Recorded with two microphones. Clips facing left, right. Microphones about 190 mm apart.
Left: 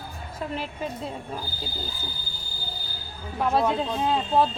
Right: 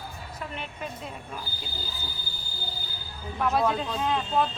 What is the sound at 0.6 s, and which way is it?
Speech, 30° left (ahead or behind).